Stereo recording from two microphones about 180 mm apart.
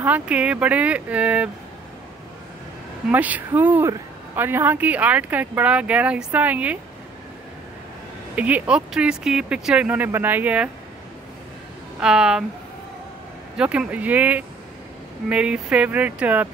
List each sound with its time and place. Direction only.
0.0 s speech: 5° right (ahead or behind)
3.1 s speech: 10° right (ahead or behind)
8.4 s speech: 10° right (ahead or behind)
12.0 s a woman's voice: 5° right (ahead or behind)
13.6 s speech: 5° right (ahead or behind)